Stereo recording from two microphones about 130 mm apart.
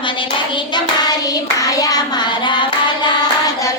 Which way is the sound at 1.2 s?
30° left (ahead or behind).